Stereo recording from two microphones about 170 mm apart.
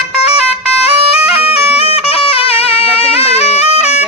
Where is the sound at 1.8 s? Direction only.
35° left (ahead or behind).